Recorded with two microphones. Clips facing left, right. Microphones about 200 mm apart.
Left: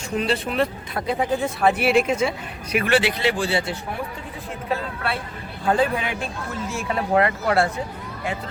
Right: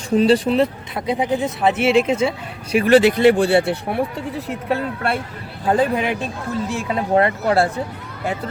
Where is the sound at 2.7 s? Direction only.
35° right (ahead or behind); by 5.2 s 55° right (ahead or behind).